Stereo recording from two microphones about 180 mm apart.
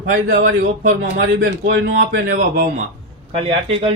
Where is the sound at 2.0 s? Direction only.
55° right (ahead or behind).